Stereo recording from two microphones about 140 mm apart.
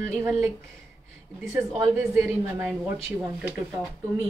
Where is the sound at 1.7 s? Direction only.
20° right (ahead or behind).